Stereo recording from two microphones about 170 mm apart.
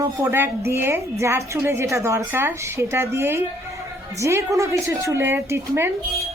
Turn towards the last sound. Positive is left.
turn(degrees=-15)  # may be behind; listen again after turning